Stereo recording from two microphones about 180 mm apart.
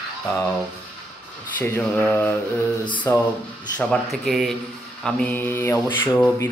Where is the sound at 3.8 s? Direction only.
5° left (ahead or behind).